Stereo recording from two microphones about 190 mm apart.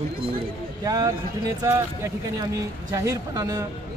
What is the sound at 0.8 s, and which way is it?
A man's voice, 20° right (ahead or behind).